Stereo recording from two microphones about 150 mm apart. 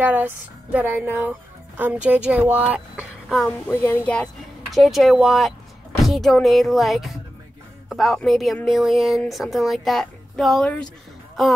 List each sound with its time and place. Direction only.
0.0 s speech: 10° right (ahead or behind)
3.3 s speech: 10° left (ahead or behind)